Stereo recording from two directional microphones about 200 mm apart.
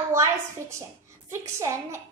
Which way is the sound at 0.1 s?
15° right (ahead or behind).